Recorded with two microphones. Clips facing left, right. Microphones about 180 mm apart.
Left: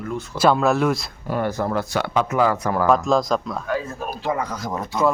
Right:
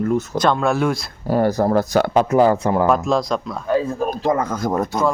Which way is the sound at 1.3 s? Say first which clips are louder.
Right 6 dB; 35° right (ahead or behind).